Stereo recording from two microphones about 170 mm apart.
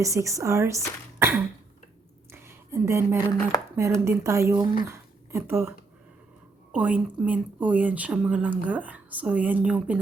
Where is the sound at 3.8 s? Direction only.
15° right (ahead or behind).